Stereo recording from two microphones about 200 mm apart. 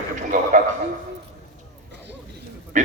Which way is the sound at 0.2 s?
40° right (ahead or behind).